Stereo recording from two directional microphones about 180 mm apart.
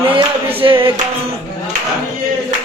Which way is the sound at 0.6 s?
30° right (ahead or behind).